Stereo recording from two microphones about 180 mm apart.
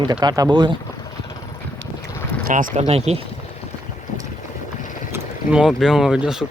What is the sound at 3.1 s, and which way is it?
Speech, 35° right (ahead or behind).